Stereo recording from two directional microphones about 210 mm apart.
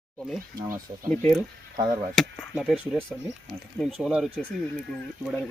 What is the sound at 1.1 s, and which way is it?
Speech, 10° left (ahead or behind).